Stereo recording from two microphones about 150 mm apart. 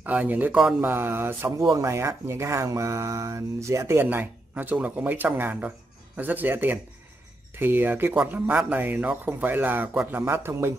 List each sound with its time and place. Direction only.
0.0 s speech: 10° right (ahead or behind)